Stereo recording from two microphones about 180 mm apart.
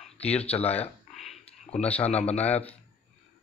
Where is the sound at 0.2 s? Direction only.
35° left (ahead or behind).